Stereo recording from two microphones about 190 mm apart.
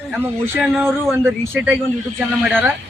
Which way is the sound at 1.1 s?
15° right (ahead or behind).